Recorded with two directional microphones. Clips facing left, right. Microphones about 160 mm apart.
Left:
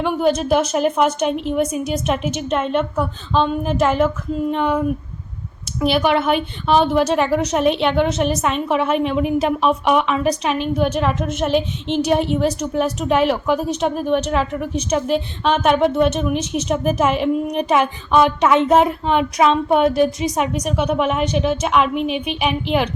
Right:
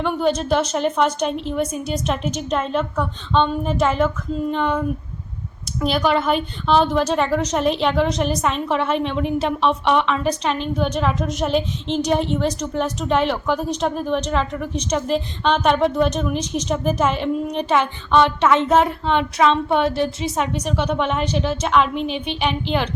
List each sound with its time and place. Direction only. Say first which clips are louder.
0.0 s a woman's voice: left 2 dB; 5° left (ahead or behind)
5.8 s a woman's voice: left 2 dB; 5° left (ahead or behind)
16.4 s speech: left 2 dB; 35° right (ahead or behind)
16.6 s a woman's voice: left 2 dB; 10° left (ahead or behind)
22.0 s speech: left 3 dB; 35° right (ahead or behind)